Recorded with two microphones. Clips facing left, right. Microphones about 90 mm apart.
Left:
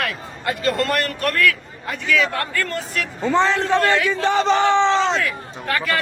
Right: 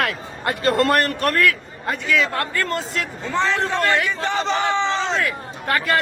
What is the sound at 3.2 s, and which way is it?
Speech, 20° left (ahead or behind).